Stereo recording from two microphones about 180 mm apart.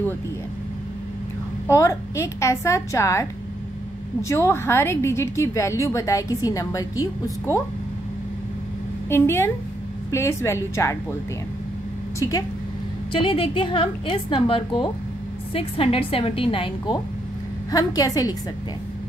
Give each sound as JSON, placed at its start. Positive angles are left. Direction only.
{"t": 1.7, "sound": "a woman's voice", "side_deg": 15}
{"t": 9.1, "sound": "a woman's voice", "side_deg": 15}
{"t": 12.2, "sound": "a woman's voice", "side_deg": 20}